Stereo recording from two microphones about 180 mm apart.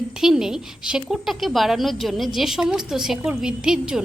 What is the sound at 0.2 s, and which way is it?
A woman's voice, centre (ahead or behind).